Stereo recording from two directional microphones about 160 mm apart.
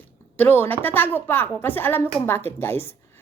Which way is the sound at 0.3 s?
10° left (ahead or behind).